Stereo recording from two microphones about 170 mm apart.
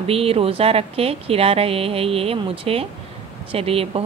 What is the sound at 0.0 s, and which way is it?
A woman's voice, 35° right (ahead or behind).